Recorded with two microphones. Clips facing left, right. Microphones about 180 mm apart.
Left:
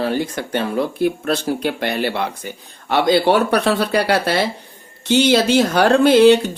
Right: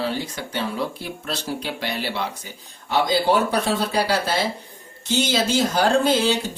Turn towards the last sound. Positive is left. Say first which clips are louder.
# left 8 dB
turn(degrees=65)  # may be behind; listen again after turning